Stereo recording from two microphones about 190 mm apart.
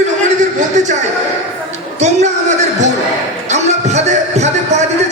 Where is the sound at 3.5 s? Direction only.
35° right (ahead or behind).